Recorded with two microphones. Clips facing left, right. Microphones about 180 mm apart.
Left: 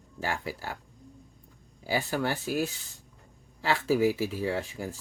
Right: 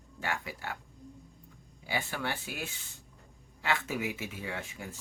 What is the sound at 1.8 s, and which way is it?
Speech, 40° left (ahead or behind).